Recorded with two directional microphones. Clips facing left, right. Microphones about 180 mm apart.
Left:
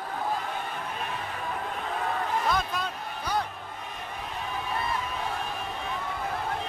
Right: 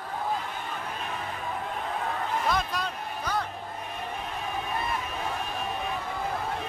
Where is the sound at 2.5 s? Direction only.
Centre (ahead or behind).